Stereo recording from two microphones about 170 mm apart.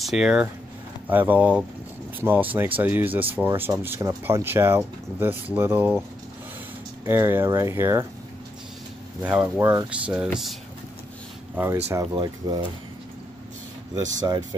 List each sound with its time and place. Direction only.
0.0 s speech: 5° right (ahead or behind)
7.1 s speech: 15° right (ahead or behind)
9.2 s speech: 10° right (ahead or behind)
11.5 s speech: 10° right (ahead or behind)